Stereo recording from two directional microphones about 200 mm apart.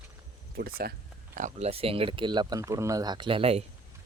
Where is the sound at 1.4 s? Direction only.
35° right (ahead or behind).